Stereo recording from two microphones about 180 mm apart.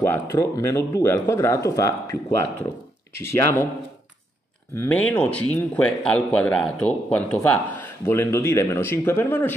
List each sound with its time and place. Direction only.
0.0 s speech: 10° left (ahead or behind)
4.7 s speech: 10° left (ahead or behind)